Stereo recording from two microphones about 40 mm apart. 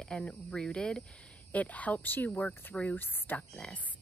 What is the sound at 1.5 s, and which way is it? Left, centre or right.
Speech, left.